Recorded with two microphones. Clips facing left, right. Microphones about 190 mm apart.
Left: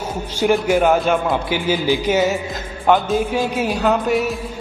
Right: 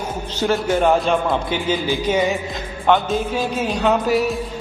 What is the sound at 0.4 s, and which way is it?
Speech, 10° left (ahead or behind).